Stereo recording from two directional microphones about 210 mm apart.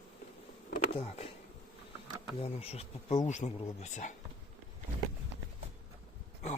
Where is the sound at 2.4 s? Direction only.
30° left (ahead or behind).